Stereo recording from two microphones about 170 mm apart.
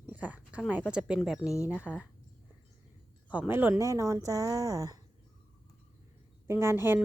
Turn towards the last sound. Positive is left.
turn(degrees=-15)  # may be behind; listen again after turning